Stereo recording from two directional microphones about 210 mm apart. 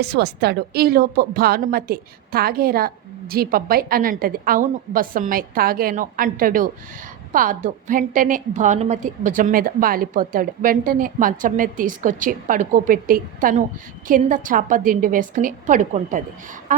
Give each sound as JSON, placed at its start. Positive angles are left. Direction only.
{"t": 0.0, "sound": "a woman's voice", "side_deg": -50}